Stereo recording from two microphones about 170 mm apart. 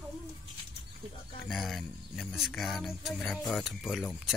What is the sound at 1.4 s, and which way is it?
Speech, centre (ahead or behind).